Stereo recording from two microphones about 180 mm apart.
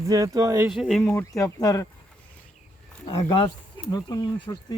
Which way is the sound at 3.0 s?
25° left (ahead or behind).